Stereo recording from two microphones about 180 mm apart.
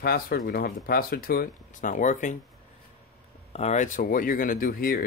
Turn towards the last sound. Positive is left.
turn(degrees=50)  # may be behind; listen again after turning